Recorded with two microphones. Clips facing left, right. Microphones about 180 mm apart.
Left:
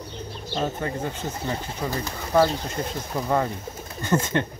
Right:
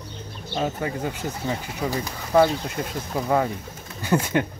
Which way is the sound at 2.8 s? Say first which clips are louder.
Left 3 dB; 5° left (ahead or behind).